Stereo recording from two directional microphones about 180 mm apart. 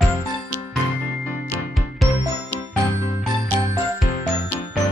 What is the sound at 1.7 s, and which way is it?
Music, centre (ahead or behind).